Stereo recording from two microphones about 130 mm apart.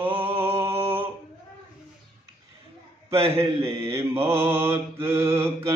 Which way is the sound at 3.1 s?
20° right (ahead or behind).